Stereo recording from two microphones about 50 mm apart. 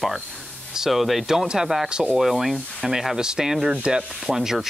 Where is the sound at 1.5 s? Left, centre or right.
Centre.